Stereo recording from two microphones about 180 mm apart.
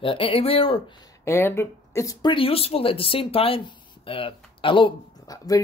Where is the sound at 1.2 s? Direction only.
15° left (ahead or behind).